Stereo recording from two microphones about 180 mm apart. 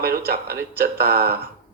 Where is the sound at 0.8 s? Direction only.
60° right (ahead or behind).